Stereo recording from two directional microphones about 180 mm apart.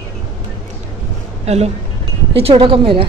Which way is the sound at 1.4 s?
35° right (ahead or behind).